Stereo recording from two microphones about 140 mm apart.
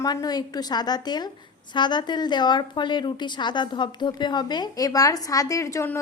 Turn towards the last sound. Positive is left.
turn(degrees=20)  # may be behind; listen again after turning